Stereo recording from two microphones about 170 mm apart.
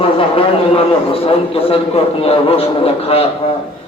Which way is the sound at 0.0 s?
35° left (ahead or behind).